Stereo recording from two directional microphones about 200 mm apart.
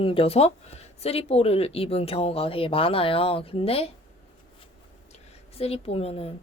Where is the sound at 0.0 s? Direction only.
30° left (ahead or behind).